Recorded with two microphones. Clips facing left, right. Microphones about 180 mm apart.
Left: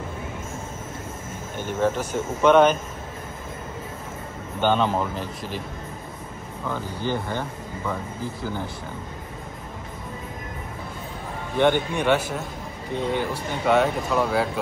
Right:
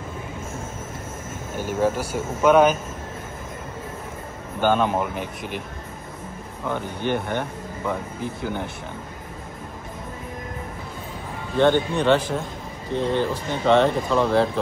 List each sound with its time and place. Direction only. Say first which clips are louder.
1.6 s speech: right 1 dB; 10° right (ahead or behind)
4.6 s speech: right 1 dB; 10° right (ahead or behind)
7.2 s speech: right 2 dB; 15° right (ahead or behind)
11.5 s speech: right 2 dB; 15° left (ahead or behind)